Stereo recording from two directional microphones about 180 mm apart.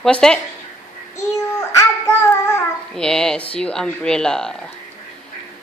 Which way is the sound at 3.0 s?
5° left (ahead or behind).